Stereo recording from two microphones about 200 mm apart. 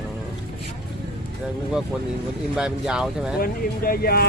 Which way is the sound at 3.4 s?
45° left (ahead or behind).